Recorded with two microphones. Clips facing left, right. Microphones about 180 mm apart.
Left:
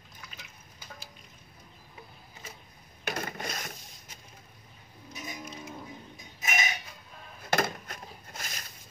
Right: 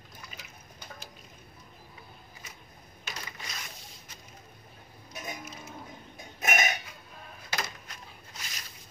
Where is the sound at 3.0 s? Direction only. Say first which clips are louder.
Left 9 dB; 55° left (ahead or behind).